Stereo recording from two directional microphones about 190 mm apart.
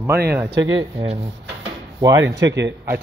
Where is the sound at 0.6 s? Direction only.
30° right (ahead or behind).